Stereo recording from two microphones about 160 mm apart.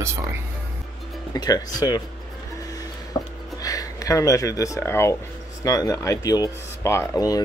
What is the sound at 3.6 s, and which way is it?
Speech, 20° left (ahead or behind).